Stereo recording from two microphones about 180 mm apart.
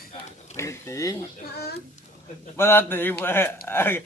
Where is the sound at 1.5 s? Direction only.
65° left (ahead or behind).